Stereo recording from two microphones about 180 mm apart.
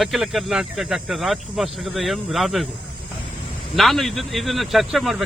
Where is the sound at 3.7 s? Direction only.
Centre (ahead or behind).